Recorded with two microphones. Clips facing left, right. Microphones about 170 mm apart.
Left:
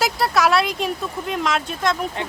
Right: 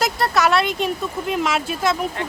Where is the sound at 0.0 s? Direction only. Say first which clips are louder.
Even; centre (ahead or behind).